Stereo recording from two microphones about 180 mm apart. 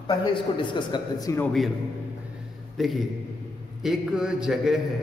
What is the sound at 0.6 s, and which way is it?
Speech, 25° left (ahead or behind).